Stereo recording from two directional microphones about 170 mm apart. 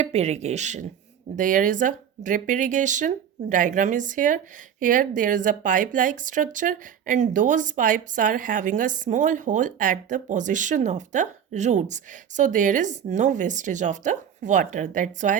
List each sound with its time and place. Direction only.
0.0 s speech: 40° right (ahead or behind)